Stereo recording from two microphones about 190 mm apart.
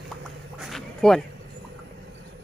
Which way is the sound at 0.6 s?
Centre (ahead or behind).